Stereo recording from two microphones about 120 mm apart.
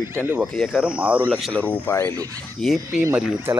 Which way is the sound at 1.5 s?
15° left (ahead or behind).